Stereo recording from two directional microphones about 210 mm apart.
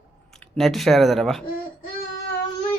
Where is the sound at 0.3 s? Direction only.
Centre (ahead or behind).